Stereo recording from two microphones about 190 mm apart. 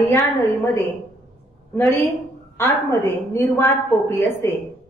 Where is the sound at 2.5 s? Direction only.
15° left (ahead or behind).